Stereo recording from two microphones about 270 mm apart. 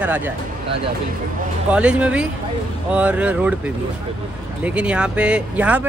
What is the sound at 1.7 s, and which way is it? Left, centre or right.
Speech, centre.